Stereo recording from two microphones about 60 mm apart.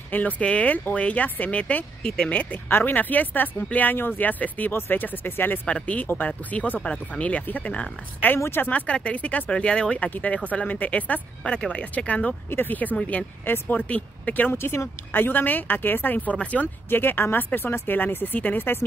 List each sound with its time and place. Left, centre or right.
0.1 s speech: left
2.7 s speech: left
5.7 s speech: left
11.4 s speech: centre
12.4 s speech: left
12.9 s speech: centre
16.6 s speech: left